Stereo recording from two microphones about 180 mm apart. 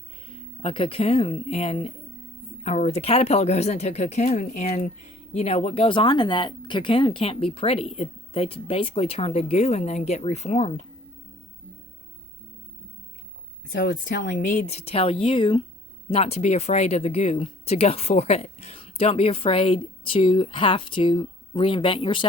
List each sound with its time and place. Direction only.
0.6 s speech: 30° left (ahead or behind)
14.1 s speech: 45° left (ahead or behind); by 22.3 s 30° left (ahead or behind)